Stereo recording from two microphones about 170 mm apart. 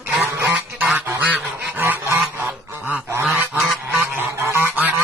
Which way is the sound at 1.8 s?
15° right (ahead or behind).